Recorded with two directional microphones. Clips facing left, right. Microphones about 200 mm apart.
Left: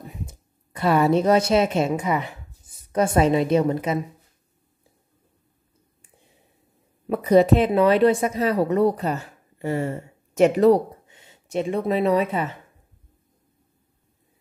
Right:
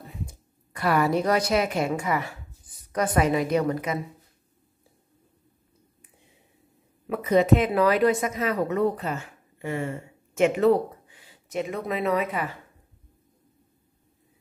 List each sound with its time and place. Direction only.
0.0 s a woman's voice: 20° left (ahead or behind)
7.1 s a woman's voice: 35° left (ahead or behind)
11.1 s speech: 25° left (ahead or behind)